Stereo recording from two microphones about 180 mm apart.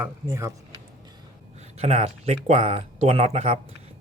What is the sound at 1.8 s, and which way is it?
Speech, 35° right (ahead or behind).